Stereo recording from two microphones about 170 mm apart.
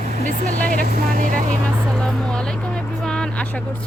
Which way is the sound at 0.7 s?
50° right (ahead or behind).